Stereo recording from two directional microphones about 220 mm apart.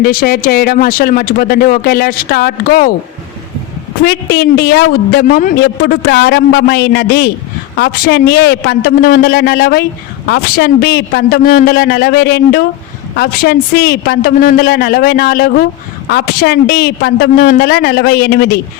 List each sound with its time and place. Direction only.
0.0 s speech: 45° left (ahead or behind)
4.0 s speech: 45° left (ahead or behind)